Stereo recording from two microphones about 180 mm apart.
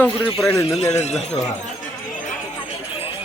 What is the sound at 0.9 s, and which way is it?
Speech, 40° left (ahead or behind).